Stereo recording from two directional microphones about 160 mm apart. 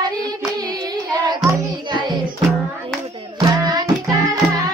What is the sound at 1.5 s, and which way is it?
Music, 25° right (ahead or behind).